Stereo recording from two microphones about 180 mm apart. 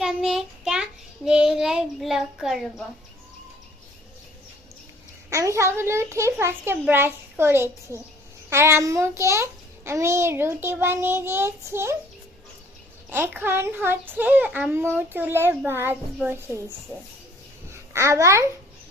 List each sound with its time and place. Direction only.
0.0 s child singing: centre (ahead or behind)
5.3 s a child's voice: 15° right (ahead or behind)
13.1 s a child's voice: 10° right (ahead or behind)